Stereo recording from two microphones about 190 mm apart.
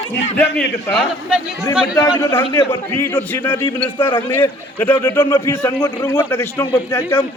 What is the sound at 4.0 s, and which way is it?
Speech, 25° left (ahead or behind).